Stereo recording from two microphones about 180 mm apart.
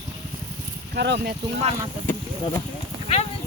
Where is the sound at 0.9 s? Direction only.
75° right (ahead or behind).